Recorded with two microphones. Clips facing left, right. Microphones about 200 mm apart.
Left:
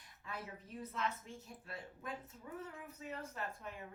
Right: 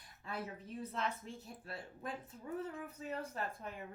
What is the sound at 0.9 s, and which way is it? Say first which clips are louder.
Speech: even; 35° right (ahead or behind).